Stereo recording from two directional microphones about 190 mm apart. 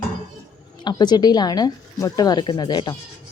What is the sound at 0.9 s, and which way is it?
A woman's voice, 20° left (ahead or behind).